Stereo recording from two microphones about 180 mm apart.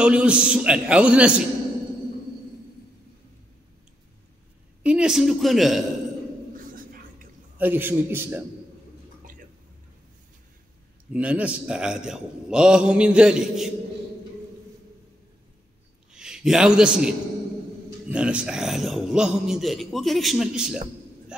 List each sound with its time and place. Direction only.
0.0 s a man's voice: 5° right (ahead or behind)
4.8 s a man's voice: 5° right (ahead or behind)
6.5 s a sound: 50° right (ahead or behind)
7.5 s a man's voice: 10° right (ahead or behind)
11.1 s a man's voice: 5° right (ahead or behind)
16.1 s a man's voice: 5° right (ahead or behind)
18.1 s a man's voice: 5° right (ahead or behind)
21.3 s a sound: 5° right (ahead or behind)